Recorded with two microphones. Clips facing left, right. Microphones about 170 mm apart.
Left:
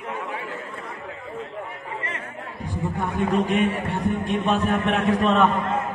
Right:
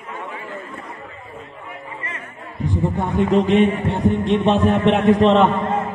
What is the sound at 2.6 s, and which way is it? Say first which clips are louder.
A man's voice: right 6 dB; 20° right (ahead or behind).